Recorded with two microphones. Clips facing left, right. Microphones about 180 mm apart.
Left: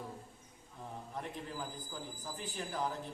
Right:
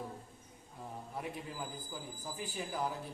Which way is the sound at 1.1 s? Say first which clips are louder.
Even; 10° right (ahead or behind).